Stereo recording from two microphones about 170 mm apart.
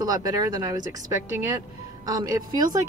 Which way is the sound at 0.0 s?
20° right (ahead or behind).